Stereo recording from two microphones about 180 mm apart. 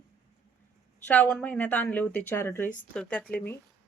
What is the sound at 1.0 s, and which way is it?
A woman's voice, 5° left (ahead or behind).